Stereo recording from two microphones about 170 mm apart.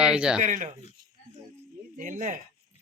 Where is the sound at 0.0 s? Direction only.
5° right (ahead or behind).